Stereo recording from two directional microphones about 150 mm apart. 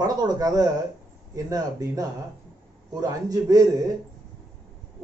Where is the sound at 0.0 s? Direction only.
25° right (ahead or behind).